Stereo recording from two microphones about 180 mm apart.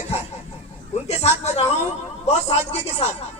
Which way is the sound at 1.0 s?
35° left (ahead or behind).